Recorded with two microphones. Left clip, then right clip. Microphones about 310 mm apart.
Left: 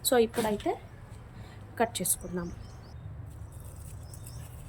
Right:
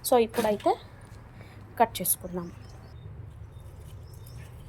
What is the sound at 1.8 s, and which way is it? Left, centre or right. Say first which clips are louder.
Speech: right 5 dB; centre.